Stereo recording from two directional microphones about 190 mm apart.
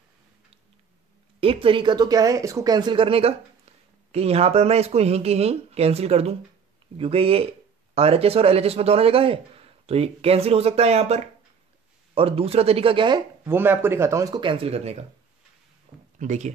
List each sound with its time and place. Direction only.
1.4 s speech: 30° right (ahead or behind)
13.5 s speech: 10° right (ahead or behind); by 15.0 s 35° right (ahead or behind)
16.2 s speech: 40° right (ahead or behind)